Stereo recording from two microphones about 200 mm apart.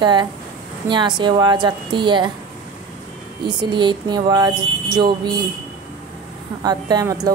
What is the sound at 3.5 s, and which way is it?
A woman's voice, 20° right (ahead or behind).